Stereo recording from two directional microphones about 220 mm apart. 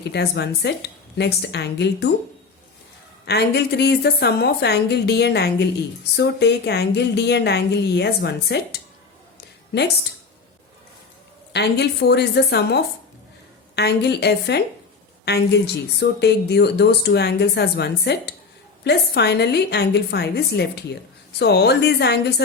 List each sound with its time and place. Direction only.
0.1 s a woman's voice: 50° left (ahead or behind)
3.2 s a woman's voice: 50° left (ahead or behind)
11.5 s a woman's voice: 50° left (ahead or behind)